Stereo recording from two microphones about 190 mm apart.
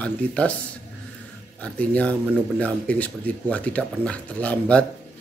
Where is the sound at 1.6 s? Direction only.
5° left (ahead or behind).